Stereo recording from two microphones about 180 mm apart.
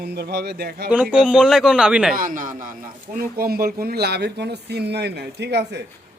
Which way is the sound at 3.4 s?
60° right (ahead or behind).